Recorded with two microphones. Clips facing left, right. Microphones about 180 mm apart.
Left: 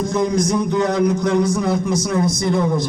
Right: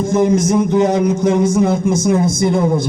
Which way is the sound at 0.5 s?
20° right (ahead or behind).